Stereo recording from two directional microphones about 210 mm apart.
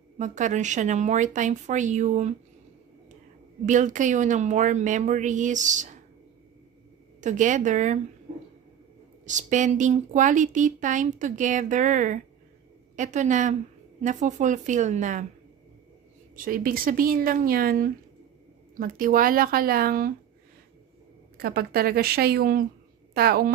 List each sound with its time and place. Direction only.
0.2 s a woman's voice: 35° right (ahead or behind)
3.6 s a woman's voice: 35° right (ahead or behind)
7.2 s a woman's voice: 35° right (ahead or behind)
9.2 s a woman's voice: 35° right (ahead or behind)
16.3 s speech: 40° right (ahead or behind)
21.4 s speech: 45° right (ahead or behind)